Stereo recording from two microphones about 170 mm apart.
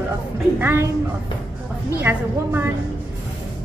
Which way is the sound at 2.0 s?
15° right (ahead or behind).